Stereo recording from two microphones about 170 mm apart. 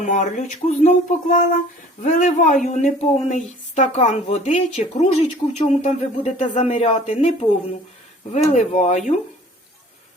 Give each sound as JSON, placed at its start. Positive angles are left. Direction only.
{"t": 0.0, "sound": "speech", "side_deg": 45}